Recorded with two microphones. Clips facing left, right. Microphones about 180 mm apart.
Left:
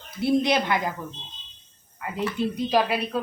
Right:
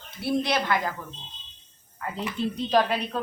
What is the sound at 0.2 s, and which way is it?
Speech, 20° left (ahead or behind).